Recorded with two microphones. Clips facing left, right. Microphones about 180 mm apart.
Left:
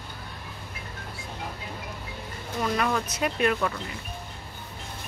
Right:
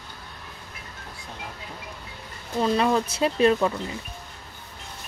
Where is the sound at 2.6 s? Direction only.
25° right (ahead or behind).